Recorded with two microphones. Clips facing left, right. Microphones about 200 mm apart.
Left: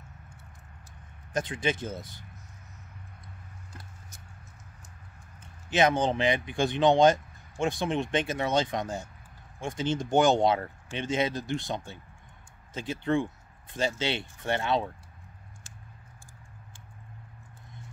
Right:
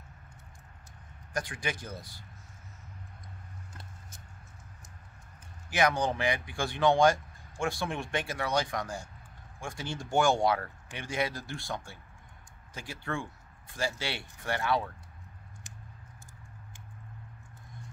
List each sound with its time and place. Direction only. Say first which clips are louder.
1.3 s speech: left 6 dB; 20° left (ahead or behind)
5.7 s speech: left 4 dB; 25° left (ahead or behind)